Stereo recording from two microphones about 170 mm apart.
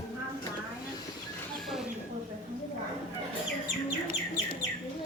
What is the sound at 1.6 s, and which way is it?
Rodents, centre (ahead or behind).